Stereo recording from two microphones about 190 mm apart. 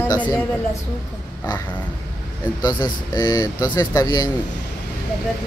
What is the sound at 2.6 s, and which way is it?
Speech, 20° left (ahead or behind).